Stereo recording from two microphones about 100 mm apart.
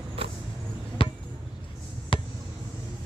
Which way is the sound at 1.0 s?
65° left (ahead or behind).